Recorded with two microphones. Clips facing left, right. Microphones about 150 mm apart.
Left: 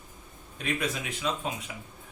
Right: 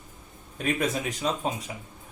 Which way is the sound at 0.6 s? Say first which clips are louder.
Right 4 dB; 45° right (ahead or behind).